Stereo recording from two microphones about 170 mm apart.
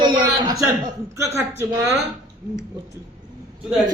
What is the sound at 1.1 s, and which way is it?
Speech, 15° right (ahead or behind).